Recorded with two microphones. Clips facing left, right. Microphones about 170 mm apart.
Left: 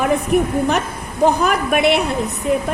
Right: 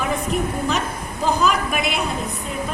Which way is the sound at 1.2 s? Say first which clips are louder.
Left 4 dB; 60° left (ahead or behind).